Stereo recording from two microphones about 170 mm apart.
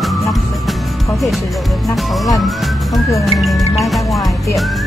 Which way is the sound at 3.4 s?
Centre (ahead or behind).